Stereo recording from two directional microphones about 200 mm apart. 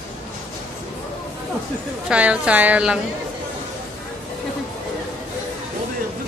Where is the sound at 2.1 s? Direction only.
5° right (ahead or behind).